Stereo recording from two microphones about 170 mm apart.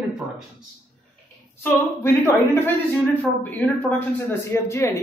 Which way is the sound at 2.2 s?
15° left (ahead or behind).